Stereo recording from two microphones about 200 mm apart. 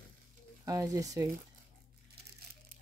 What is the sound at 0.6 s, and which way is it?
Speech, 15° right (ahead or behind).